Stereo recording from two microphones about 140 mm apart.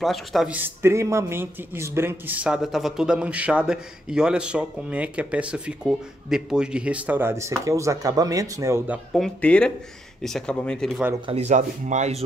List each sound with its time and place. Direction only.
0.0 s speech: centre (ahead or behind)
0.5 s a man's voice: 15° right (ahead or behind)
9.1 s speech: 5° left (ahead or behind)
11.2 s speech: 50° right (ahead or behind)